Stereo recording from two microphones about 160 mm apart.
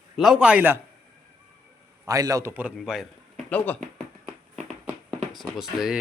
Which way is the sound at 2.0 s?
20° right (ahead or behind).